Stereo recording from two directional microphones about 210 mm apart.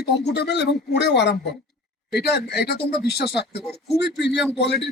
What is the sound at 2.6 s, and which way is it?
Speech, 50° left (ahead or behind).